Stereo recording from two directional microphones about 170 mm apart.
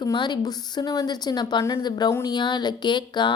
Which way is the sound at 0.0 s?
25° left (ahead or behind).